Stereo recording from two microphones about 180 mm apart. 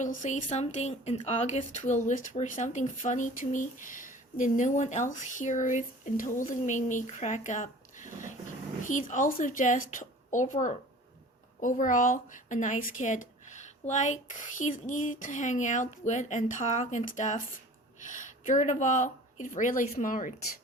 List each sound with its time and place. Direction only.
0.5 s speech: 35° left (ahead or behind)